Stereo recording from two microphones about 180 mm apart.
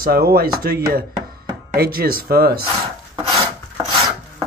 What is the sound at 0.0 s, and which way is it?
Speech, 55° right (ahead or behind).